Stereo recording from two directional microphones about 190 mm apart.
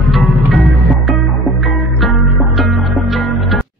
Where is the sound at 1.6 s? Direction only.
Centre (ahead or behind).